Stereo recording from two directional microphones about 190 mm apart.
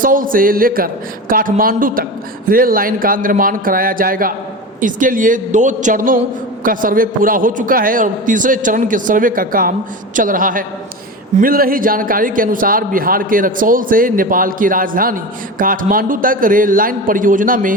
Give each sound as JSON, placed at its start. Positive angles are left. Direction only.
{"t": 0.0, "sound": "a man's voice", "side_deg": -45}